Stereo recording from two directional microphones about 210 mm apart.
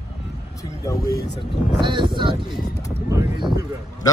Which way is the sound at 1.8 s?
20° right (ahead or behind).